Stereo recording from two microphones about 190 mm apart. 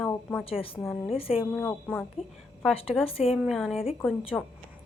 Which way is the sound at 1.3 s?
5° right (ahead or behind).